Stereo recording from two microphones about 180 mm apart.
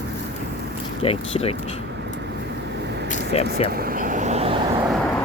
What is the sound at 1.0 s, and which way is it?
Speech, 35° left (ahead or behind).